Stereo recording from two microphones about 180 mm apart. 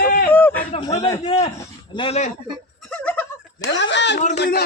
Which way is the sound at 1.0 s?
25° left (ahead or behind).